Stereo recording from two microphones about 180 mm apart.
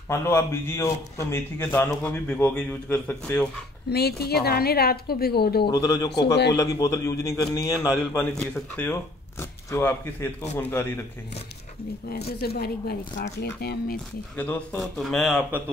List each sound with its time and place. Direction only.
0.1 s a man's voice: 15° left (ahead or behind)
3.9 s a woman's voice: 60° left (ahead or behind)
5.7 s a man's voice: 20° left (ahead or behind)
12.1 s a woman's voice: 60° left (ahead or behind)
14.3 s a man's voice: 10° left (ahead or behind)